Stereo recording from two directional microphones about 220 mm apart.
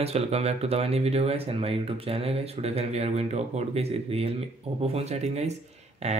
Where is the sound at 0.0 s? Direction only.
30° right (ahead or behind).